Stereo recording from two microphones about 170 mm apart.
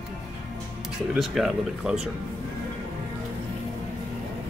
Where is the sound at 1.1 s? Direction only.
Centre (ahead or behind).